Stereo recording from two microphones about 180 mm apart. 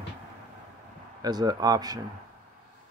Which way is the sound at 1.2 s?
20° right (ahead or behind).